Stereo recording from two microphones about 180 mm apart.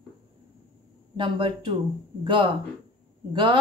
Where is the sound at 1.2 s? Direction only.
25° right (ahead or behind).